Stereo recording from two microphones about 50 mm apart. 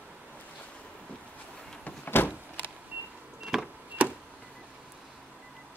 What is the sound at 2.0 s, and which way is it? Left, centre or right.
Power windows, left.